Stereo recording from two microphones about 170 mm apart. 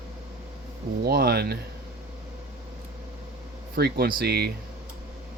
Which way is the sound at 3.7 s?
70° right (ahead or behind).